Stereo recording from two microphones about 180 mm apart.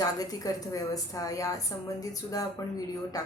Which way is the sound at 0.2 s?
20° left (ahead or behind).